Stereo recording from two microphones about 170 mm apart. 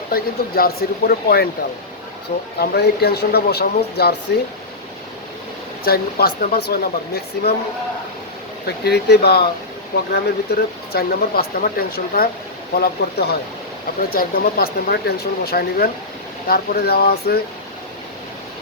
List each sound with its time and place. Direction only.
0.1 s speech: 60° left (ahead or behind)
2.6 s speech: 70° left (ahead or behind)
5.8 s speech: 65° left (ahead or behind)
8.6 s speech: 70° left (ahead or behind)